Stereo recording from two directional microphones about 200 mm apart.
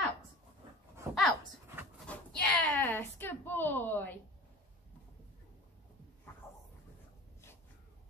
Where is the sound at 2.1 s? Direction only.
5° left (ahead or behind).